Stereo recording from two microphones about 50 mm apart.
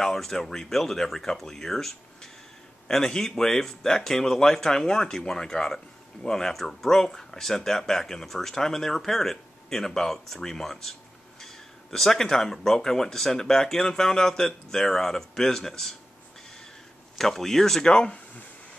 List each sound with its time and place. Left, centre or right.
0.0 s speech: centre
17.2 s speech: centre
17.9 s speech: left